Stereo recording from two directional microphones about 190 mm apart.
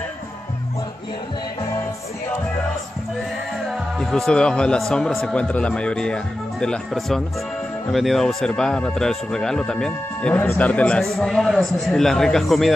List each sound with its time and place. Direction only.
3.7 s speech: centre (ahead or behind)